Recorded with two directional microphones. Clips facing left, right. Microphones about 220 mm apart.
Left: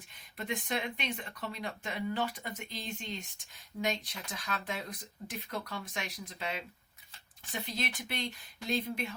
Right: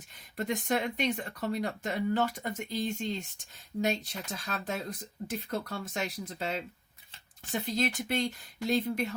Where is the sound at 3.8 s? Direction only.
40° right (ahead or behind).